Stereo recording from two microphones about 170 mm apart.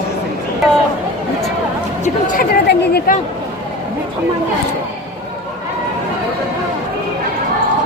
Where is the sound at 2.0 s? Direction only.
50° left (ahead or behind).